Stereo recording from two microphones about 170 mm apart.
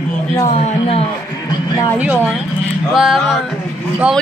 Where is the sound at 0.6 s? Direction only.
35° left (ahead or behind).